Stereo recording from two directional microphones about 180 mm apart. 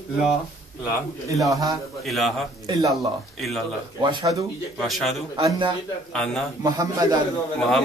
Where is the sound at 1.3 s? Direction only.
Centre (ahead or behind).